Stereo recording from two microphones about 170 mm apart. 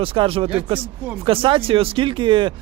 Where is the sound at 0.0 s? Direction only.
30° right (ahead or behind).